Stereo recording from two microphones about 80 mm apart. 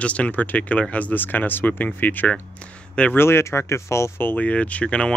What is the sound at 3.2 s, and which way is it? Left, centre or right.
Speech, left.